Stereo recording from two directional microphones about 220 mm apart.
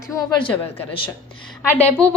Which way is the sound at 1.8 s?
5° left (ahead or behind).